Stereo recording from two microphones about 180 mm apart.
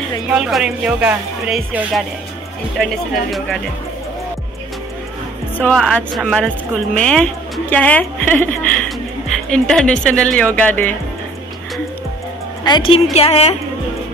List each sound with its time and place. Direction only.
0.3 s speech: 5° right (ahead or behind)
5.6 s speech: 5° left (ahead or behind)
12.6 s a woman's voice: 25° left (ahead or behind)